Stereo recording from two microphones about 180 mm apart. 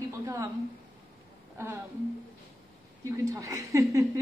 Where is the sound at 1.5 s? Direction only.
15° right (ahead or behind).